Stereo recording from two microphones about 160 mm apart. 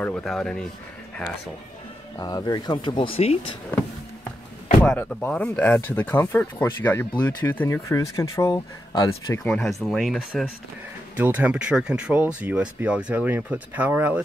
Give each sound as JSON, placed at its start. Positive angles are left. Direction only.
{"t": 0.0, "sound": "speech", "side_deg": 5}
{"t": 2.1, "sound": "speech", "side_deg": 25}
{"t": 4.8, "sound": "speech", "side_deg": 10}
{"t": 9.4, "sound": "speech", "side_deg": 5}